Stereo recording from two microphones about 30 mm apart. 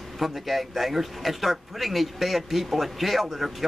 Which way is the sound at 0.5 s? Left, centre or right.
Centre.